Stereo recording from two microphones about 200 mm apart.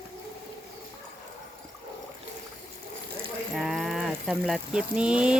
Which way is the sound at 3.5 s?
Centre (ahead or behind).